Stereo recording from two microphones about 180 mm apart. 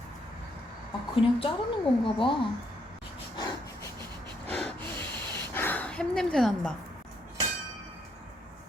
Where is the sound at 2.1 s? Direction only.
30° left (ahead or behind).